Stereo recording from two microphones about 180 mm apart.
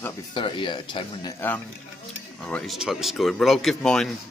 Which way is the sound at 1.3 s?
10° left (ahead or behind).